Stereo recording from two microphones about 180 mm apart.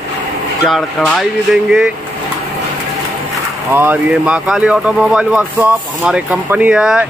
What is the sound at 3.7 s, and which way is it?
Speech, 10° right (ahead or behind).